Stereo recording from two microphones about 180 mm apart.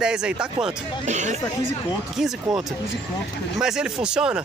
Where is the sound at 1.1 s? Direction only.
40° right (ahead or behind).